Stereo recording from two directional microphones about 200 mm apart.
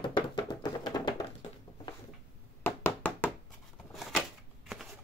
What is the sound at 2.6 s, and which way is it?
Knock, 10° left (ahead or behind).